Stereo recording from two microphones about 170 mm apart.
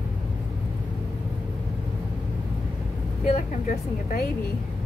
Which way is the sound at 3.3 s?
50° left (ahead or behind).